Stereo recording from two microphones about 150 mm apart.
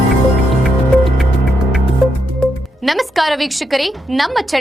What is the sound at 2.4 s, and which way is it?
Speech, centre (ahead or behind).